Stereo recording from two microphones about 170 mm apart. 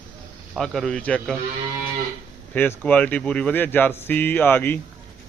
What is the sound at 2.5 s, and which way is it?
A man's voice, 10° left (ahead or behind).